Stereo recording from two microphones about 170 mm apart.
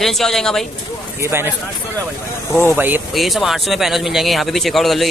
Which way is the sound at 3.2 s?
Centre (ahead or behind).